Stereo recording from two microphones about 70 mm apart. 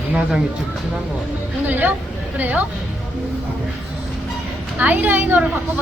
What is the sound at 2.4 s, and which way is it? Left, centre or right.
Speech, right.